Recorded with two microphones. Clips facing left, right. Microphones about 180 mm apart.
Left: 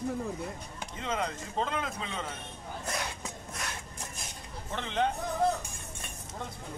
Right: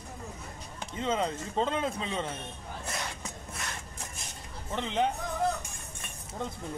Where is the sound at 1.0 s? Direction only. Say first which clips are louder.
Right 4 dB; 25° right (ahead or behind).